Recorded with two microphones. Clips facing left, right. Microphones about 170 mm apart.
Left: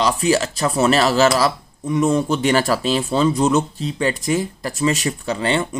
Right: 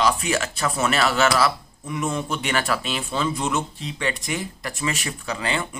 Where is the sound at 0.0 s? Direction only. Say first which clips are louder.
Left 5 dB; 30° left (ahead or behind).